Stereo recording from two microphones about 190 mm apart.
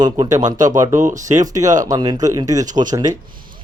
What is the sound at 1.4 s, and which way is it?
Speech, 20° right (ahead or behind).